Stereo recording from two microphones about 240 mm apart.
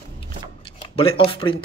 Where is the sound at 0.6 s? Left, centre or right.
Left.